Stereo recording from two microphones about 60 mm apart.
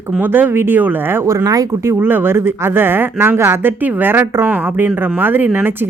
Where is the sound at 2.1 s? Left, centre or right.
Right.